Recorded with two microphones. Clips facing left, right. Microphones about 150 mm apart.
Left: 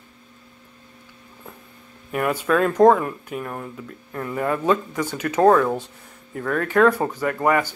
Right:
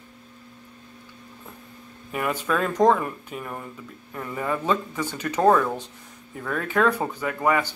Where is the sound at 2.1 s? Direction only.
5° left (ahead or behind).